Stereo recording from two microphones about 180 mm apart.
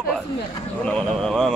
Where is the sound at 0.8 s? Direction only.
5° left (ahead or behind).